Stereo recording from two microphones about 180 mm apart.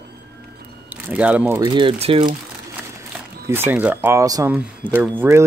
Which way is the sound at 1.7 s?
30° right (ahead or behind).